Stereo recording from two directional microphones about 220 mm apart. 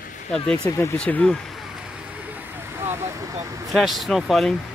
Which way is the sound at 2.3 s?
10° right (ahead or behind).